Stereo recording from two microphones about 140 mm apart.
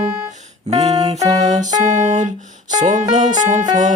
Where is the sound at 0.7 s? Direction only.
45° right (ahead or behind).